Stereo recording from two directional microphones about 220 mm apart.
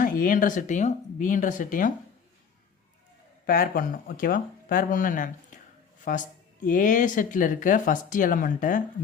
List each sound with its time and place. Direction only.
0.0 s speech: 40° left (ahead or behind)
3.4 s speech: 40° left (ahead or behind)